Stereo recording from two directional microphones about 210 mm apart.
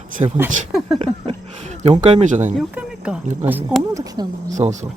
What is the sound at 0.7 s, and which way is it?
Speech, centre (ahead or behind).